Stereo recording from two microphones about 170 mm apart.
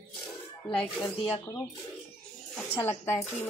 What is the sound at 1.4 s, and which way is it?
Speech, 15° left (ahead or behind).